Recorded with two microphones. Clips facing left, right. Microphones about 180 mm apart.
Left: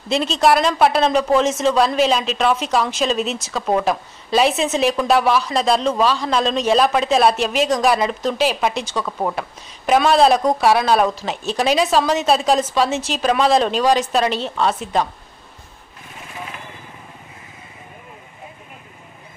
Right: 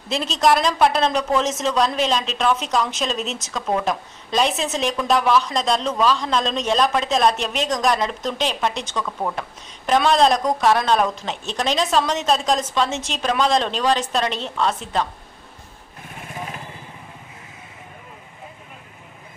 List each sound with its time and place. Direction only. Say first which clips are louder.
0.1 s a woman's voice: left 3 dB; centre (ahead or behind)
8.8 s speech: left 3 dB; 35° left (ahead or behind)
9.3 s a woman's voice: left 3 dB; 5° left (ahead or behind)